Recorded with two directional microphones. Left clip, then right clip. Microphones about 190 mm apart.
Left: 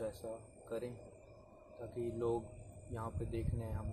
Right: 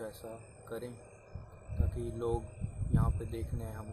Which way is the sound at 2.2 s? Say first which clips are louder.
Right 3 dB; 15° right (ahead or behind).